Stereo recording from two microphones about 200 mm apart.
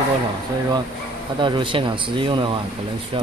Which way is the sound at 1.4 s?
25° right (ahead or behind).